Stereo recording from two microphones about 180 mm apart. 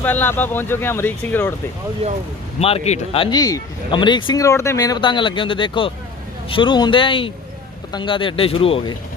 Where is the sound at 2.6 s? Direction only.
35° left (ahead or behind).